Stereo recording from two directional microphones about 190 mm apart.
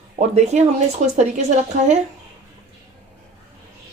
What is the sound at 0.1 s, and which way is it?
A woman's voice, 35° right (ahead or behind).